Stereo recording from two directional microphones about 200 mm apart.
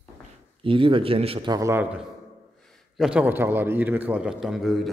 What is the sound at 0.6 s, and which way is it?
A man's voice, 25° right (ahead or behind).